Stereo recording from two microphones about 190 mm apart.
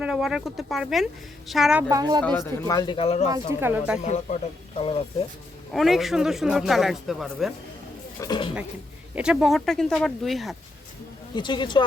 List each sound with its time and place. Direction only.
0.0 s speech: 5° right (ahead or behind)
1.9 s speech: 20° right (ahead or behind)
2.2 s speech: 15° left (ahead or behind); by 3.2 s 30° left (ahead or behind)
3.2 s speech: 15° right (ahead or behind)
4.0 s a man's voice: 40° left (ahead or behind)
5.7 s speech: centre (ahead or behind)
8.2 s speech: 25° left (ahead or behind)
9.1 s speech: 5° right (ahead or behind)
11.3 s speech: 25° left (ahead or behind)